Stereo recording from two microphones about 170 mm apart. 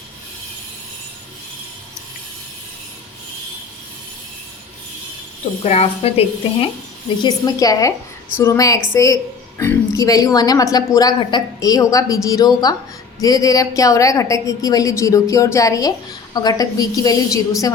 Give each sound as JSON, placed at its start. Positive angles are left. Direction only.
{"t": 5.6, "sound": "speech", "side_deg": 40}
{"t": 7.2, "sound": "a woman's voice", "side_deg": 25}